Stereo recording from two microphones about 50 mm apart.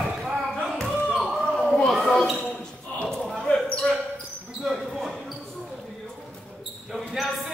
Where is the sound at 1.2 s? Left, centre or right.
Centre.